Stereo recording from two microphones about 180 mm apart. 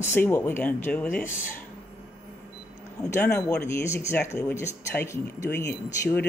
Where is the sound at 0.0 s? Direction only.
10° left (ahead or behind).